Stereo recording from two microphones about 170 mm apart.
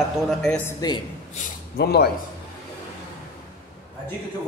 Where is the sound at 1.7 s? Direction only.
70° left (ahead or behind).